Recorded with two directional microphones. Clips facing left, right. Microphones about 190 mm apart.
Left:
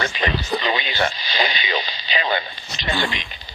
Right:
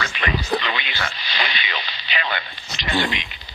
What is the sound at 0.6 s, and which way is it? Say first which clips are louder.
Speech: left 6 dB; 40° left (ahead or behind).